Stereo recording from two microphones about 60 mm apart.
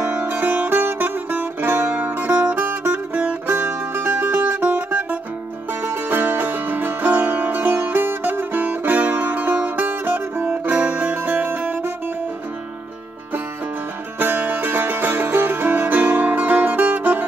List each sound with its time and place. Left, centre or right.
0.1 s music: right
3.4 s music: right
6.0 s music: right
14.2 s music: right